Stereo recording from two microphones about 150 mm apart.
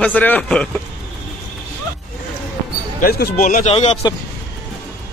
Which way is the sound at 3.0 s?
85° left.